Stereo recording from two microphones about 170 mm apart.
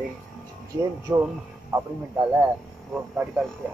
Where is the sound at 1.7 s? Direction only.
15° right (ahead or behind).